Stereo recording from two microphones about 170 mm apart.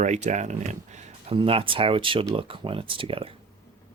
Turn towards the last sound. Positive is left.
turn(degrees=-30)  # may be behind; listen again after turning